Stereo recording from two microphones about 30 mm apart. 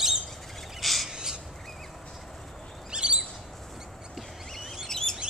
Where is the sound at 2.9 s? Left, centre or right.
Right.